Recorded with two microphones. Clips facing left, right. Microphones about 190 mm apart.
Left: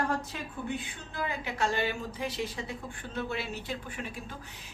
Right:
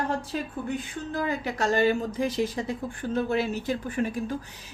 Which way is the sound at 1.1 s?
40° right (ahead or behind).